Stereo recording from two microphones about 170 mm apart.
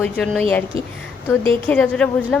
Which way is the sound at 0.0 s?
10° left (ahead or behind).